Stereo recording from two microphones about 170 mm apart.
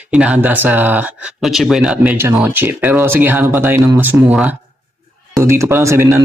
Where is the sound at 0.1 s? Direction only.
5° right (ahead or behind).